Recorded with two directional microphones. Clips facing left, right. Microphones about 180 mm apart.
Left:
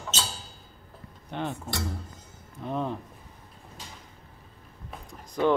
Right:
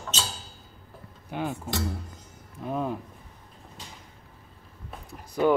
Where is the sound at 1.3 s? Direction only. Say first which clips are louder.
Right 2 dB; 5° right (ahead or behind).